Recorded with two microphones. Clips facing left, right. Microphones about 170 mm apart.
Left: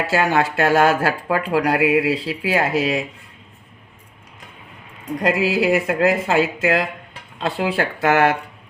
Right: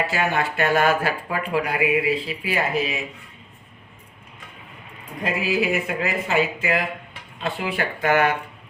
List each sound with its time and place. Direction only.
0.1 s speech: 90° left
5.2 s speech: 90° left